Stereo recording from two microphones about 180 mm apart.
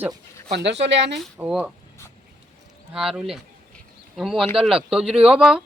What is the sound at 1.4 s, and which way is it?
Speech, 5° right (ahead or behind).